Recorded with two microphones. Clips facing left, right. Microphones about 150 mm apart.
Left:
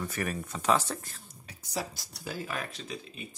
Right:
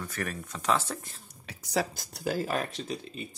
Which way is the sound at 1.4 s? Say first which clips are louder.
Right 6 dB; 80° right.